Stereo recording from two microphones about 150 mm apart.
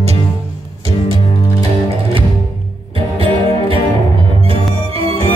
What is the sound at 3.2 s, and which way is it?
Music, 40° right (ahead or behind).